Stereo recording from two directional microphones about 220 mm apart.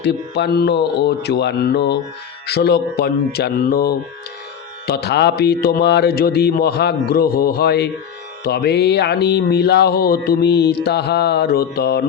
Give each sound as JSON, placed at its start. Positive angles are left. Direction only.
{"t": 0.0, "sound": "speech", "side_deg": 50}